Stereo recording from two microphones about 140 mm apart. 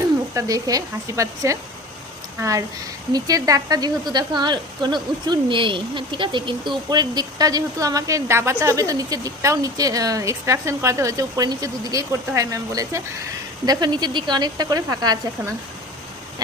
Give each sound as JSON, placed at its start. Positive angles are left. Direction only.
{"t": 0.3, "sound": "speech", "side_deg": -25}